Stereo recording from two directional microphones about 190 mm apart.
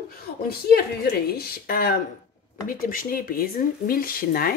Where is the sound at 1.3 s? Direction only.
55° left (ahead or behind).